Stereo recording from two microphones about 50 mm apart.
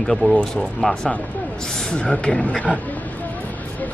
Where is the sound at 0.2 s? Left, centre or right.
Left.